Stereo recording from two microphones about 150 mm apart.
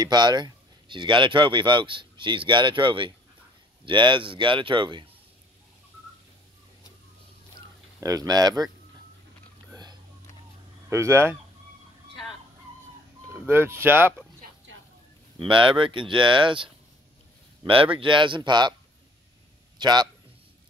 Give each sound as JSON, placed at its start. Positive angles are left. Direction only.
{"t": 0.0, "sound": "speech", "side_deg": -30}
{"t": 8.0, "sound": "speech", "side_deg": -25}
{"t": 9.7, "sound": "whispering", "side_deg": -25}
{"t": 10.9, "sound": "speech", "side_deg": -20}
{"t": 13.3, "sound": "speech", "side_deg": -15}
{"t": 15.3, "sound": "speech", "side_deg": -35}
{"t": 17.9, "sound": "speech", "side_deg": -35}
{"t": 19.8, "sound": "speech", "side_deg": -30}